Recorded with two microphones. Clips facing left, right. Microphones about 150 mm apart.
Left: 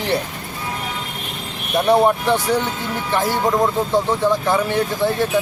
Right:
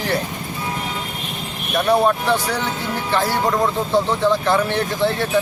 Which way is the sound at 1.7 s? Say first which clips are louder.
Left 2 dB; 20° left (ahead or behind).